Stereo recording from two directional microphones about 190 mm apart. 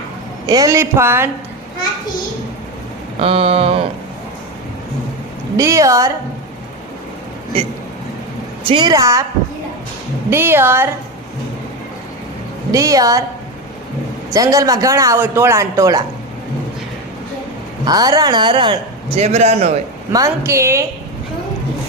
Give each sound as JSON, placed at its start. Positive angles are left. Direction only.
{"t": 0.4, "sound": "a man's voice", "side_deg": -20}
{"t": 3.2, "sound": "a sound", "side_deg": -30}
{"t": 5.5, "sound": "a man's voice", "side_deg": -15}
{"t": 8.6, "sound": "speech", "side_deg": -25}
{"t": 10.2, "sound": "a man's voice", "side_deg": -10}
{"t": 12.7, "sound": "a man's voice", "side_deg": -20}
{"t": 14.3, "sound": "a man's voice", "side_deg": -20}
{"t": 17.8, "sound": "speech", "side_deg": -20}
{"t": 20.1, "sound": "a man's voice", "side_deg": -15}